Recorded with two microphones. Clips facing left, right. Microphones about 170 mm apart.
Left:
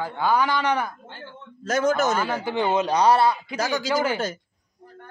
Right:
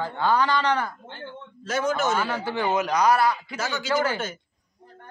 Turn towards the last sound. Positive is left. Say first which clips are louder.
# left 1 dB
turn(degrees=15)  # may be behind; listen again after turning